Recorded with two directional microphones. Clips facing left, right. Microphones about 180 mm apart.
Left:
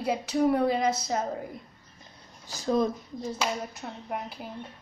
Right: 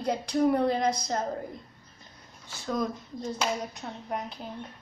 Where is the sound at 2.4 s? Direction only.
35° left (ahead or behind).